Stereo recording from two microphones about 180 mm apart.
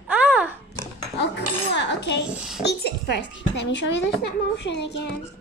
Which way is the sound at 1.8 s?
75° left (ahead or behind).